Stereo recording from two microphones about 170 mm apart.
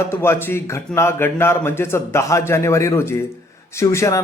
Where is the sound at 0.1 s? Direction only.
15° left (ahead or behind).